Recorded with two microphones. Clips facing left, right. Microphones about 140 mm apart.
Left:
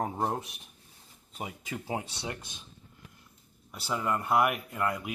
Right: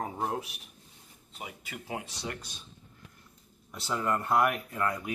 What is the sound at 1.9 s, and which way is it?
Speech, 30° left (ahead or behind).